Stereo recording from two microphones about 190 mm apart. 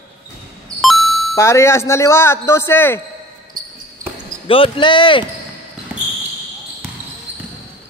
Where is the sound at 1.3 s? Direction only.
15° left (ahead or behind).